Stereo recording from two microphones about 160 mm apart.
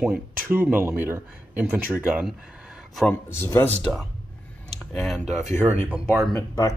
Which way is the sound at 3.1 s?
15° left (ahead or behind).